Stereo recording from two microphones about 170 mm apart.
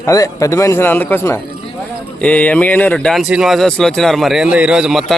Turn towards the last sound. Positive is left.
turn(degrees=0)  # may be behind; listen again after turning